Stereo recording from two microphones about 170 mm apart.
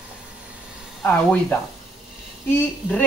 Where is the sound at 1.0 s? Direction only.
10° left (ahead or behind).